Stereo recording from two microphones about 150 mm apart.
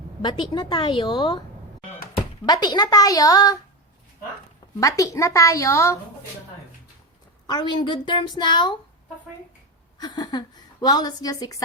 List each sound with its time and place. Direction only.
0.2 s a woman's voice: 30° left (ahead or behind)
2.5 s a woman's voice: 30° left (ahead or behind)
4.8 s a woman's voice: 20° left (ahead or behind)
7.4 s a woman's voice: 30° left (ahead or behind)
10.0 s a woman's voice: 30° left (ahead or behind)